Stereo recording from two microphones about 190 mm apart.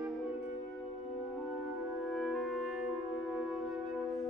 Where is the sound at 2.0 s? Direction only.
Centre (ahead or behind).